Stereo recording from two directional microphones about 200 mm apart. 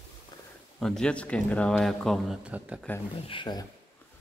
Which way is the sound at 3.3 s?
20° left (ahead or behind).